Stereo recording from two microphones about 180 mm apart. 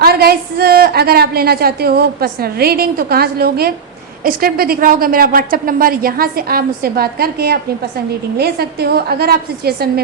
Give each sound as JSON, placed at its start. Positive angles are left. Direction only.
{"t": 0.0, "sound": "a woman's voice", "side_deg": -60}